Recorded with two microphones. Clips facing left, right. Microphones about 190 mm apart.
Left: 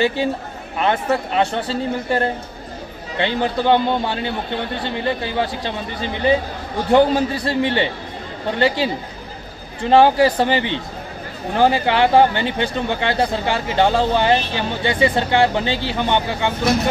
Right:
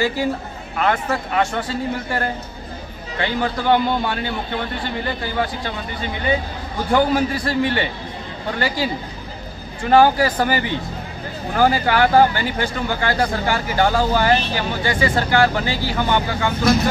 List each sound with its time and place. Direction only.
0.7 s speech: 25° left (ahead or behind)
6.9 s speech: 25° left (ahead or behind)